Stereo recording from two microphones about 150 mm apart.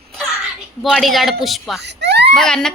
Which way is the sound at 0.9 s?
Centre (ahead or behind).